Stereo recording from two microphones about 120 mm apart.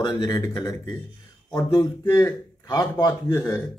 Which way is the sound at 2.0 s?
25° left (ahead or behind).